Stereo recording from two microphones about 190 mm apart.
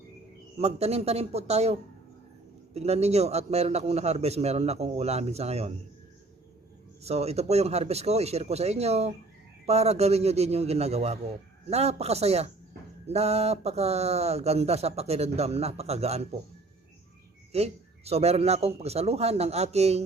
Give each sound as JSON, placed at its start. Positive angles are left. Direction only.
{"t": 0.6, "sound": "speech", "side_deg": -35}
{"t": 7.0, "sound": "speech", "side_deg": -35}
{"t": 17.5, "sound": "speech", "side_deg": -35}